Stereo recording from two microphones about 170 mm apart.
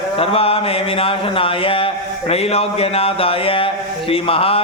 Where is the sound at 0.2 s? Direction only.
35° left (ahead or behind).